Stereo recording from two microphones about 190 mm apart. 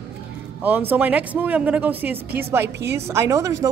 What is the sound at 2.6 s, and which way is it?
Speech, 65° right (ahead or behind).